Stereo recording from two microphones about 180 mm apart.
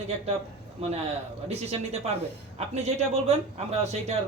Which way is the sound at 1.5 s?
35° right (ahead or behind).